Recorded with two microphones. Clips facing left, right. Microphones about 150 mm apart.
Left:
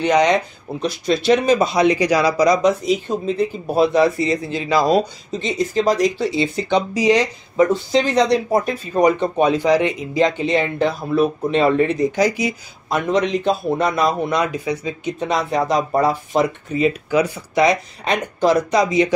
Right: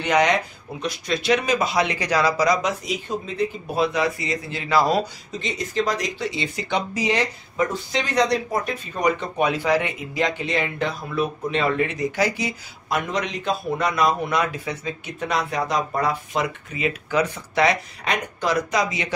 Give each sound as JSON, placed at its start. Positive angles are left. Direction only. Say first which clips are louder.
{"t": 0.0, "sound": "speech", "louder": "left 4 dB", "side_deg": 20}
{"t": 0.7, "sound": "speech", "louder": "left 6 dB", "side_deg": 30}
{"t": 3.7, "sound": "speech", "louder": "left 9 dB", "side_deg": 35}
{"t": 5.4, "sound": "speech", "louder": "left 6 dB", "side_deg": 35}
{"t": 6.9, "sound": "speech", "louder": "left 7 dB", "side_deg": 15}
{"t": 7.7, "sound": "speech", "louder": "left 7 dB", "side_deg": 30}
{"t": 9.6, "sound": "speech", "louder": "left 5 dB", "side_deg": 15}
{"t": 12.2, "sound": "speech", "louder": "left 5 dB", "side_deg": 15}
{"t": 12.9, "sound": "speech", "louder": "left 7 dB", "side_deg": 30}
{"t": 14.4, "sound": "speech", "louder": "left 5 dB", "side_deg": 15}
{"t": 15.2, "sound": "speech", "louder": "left 4 dB", "side_deg": 30}
{"t": 17.1, "sound": "speech", "louder": "left 4 dB", "side_deg": 15}
{"t": 18.0, "sound": "speech", "louder": "left 7 dB", "side_deg": 30}